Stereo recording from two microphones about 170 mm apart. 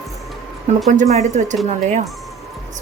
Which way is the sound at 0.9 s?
45° right (ahead or behind).